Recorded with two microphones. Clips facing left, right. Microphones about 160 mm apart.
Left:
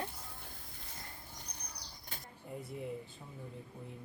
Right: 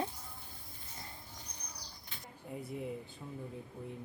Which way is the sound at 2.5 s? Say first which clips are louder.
Right 2 dB; centre (ahead or behind).